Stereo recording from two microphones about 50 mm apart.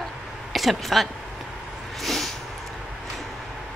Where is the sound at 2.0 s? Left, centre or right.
Centre.